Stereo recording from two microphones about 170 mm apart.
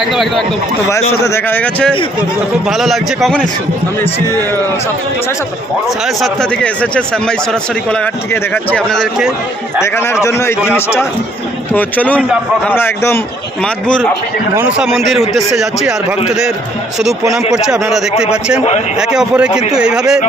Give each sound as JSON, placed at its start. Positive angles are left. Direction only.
{"t": 0.0, "sound": "speech", "side_deg": 0}
{"t": 1.2, "sound": "speech", "side_deg": 15}
{"t": 2.6, "sound": "speech", "side_deg": 0}
{"t": 6.2, "sound": "speech", "side_deg": 5}
{"t": 9.8, "sound": "speech", "side_deg": 15}
{"t": 13.8, "sound": "speech", "side_deg": 5}
{"t": 17.5, "sound": "speech", "side_deg": 0}